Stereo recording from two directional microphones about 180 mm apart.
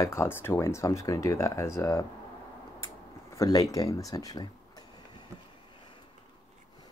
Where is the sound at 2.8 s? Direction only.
20° left (ahead or behind).